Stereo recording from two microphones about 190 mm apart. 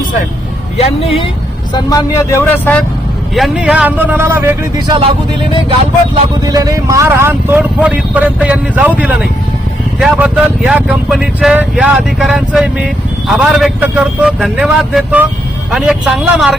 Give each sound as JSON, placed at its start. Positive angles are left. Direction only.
{"t": 0.8, "sound": "speech", "side_deg": 30}
{"t": 1.7, "sound": "speech", "side_deg": 15}
{"t": 3.3, "sound": "speech", "side_deg": 0}
{"t": 4.9, "sound": "speech", "side_deg": -30}
{"t": 6.4, "sound": "speech", "side_deg": -20}